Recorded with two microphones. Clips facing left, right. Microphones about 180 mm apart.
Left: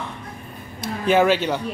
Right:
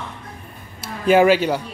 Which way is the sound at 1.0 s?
10° right (ahead or behind).